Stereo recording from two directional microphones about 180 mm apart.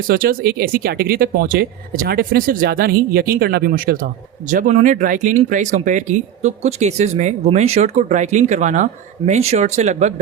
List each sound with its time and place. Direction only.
0.1 s speech: 55° right (ahead or behind)